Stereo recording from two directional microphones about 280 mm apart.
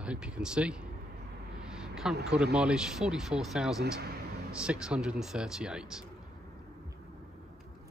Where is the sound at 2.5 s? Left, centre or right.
Centre.